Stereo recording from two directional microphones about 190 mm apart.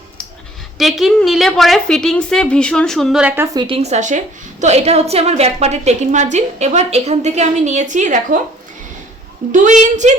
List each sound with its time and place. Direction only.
0.8 s a woman's voice: centre (ahead or behind); by 3.8 s 20° right (ahead or behind)
3.8 s a woman's voice: 35° right (ahead or behind)
9.5 s a woman's voice: 40° right (ahead or behind)